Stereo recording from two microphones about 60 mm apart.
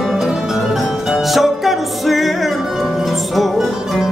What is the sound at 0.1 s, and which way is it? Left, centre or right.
Music, centre.